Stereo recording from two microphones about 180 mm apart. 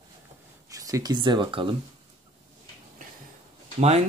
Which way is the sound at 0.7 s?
20° right (ahead or behind).